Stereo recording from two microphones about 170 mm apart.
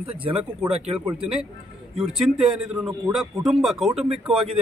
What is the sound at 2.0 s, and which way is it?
A man's voice, 5° right (ahead or behind).